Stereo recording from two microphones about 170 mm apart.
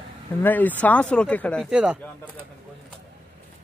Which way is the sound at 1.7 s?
5° right (ahead or behind).